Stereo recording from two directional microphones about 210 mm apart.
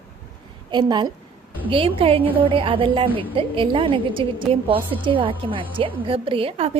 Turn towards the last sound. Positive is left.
turn(degrees=-30)  # may be behind; listen again after turning